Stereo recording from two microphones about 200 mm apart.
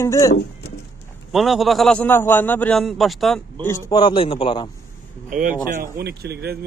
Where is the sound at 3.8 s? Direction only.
20° left (ahead or behind).